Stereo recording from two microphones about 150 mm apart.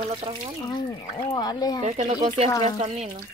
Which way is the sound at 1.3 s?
25° left (ahead or behind).